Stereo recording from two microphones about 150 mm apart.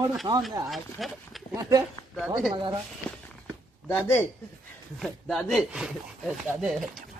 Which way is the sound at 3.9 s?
15° left (ahead or behind).